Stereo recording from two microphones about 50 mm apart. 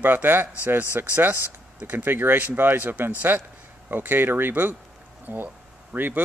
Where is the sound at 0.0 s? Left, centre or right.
Right.